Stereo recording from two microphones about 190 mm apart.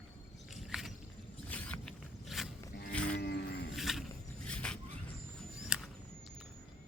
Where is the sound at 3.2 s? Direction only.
60° left (ahead or behind).